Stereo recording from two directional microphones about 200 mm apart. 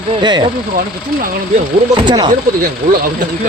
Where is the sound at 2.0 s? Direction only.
20° right (ahead or behind).